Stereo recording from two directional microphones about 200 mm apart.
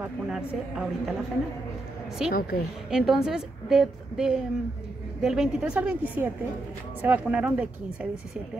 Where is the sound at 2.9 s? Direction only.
5° right (ahead or behind).